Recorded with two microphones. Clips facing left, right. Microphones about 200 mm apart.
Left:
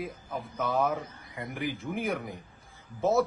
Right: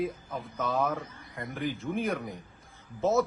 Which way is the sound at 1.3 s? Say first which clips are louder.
Right 1 dB; 15° left (ahead or behind).